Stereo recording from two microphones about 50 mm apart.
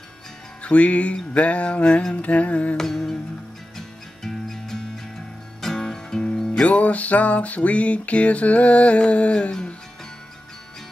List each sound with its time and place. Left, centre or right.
0.6 s music: left
2.8 s music: centre